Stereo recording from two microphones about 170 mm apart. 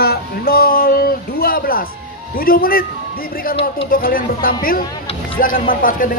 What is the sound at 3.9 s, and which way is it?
A man's voice, 60° left (ahead or behind).